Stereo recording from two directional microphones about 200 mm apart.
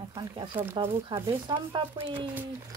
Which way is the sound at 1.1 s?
20° right (ahead or behind).